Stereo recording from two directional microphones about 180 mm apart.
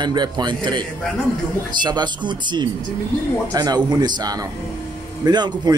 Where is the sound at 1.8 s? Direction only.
25° right (ahead or behind).